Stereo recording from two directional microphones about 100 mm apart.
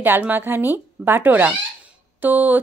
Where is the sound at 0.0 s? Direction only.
20° right (ahead or behind).